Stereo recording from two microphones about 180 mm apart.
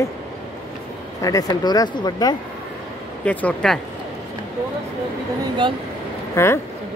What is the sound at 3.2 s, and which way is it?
Speech, 5° left (ahead or behind).